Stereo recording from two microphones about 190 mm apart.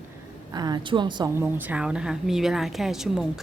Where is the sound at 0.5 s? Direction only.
20° right (ahead or behind).